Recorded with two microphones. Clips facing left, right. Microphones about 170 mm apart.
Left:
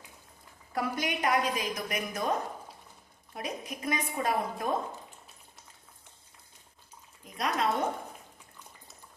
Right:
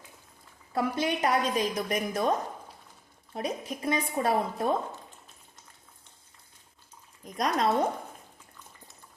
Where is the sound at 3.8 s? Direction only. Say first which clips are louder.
Right 4 dB; 30° right (ahead or behind).